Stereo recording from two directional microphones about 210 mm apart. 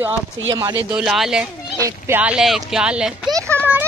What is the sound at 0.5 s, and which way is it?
Speech, 20° right (ahead or behind).